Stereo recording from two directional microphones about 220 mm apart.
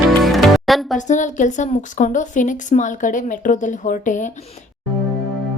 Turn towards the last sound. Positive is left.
turn(degrees=35)  # may be behind; listen again after turning